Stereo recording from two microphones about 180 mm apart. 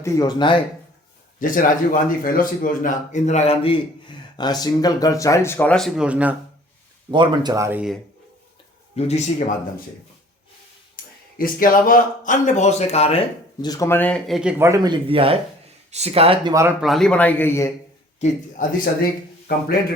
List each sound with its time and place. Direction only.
0.0 s speech: 20° left (ahead or behind)
1.4 s speech: 50° left (ahead or behind); by 6.3 s 5° right (ahead or behind)
7.1 s speech: 25° right (ahead or behind); by 7.9 s 10° right (ahead or behind)
9.0 s speech: 40° left (ahead or behind)
11.3 s speech: 50° left (ahead or behind); by 13.7 s 35° left (ahead or behind)
13.7 s speech: 15° left (ahead or behind); by 14.5 s centre (ahead or behind)
14.6 s speech: 20° right (ahead or behind)
16.8 s speech: centre (ahead or behind)
18.2 s a man's voice: 45° left (ahead or behind)
19.5 s a man's voice: 55° left (ahead or behind)